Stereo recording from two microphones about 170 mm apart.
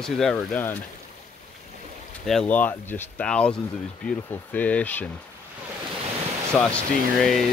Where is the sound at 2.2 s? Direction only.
5° left (ahead or behind).